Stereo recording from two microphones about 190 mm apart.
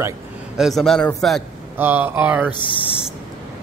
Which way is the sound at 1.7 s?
10° right (ahead or behind).